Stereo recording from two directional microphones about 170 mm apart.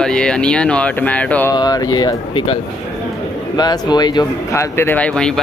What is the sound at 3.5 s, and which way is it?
Speech, 25° left (ahead or behind).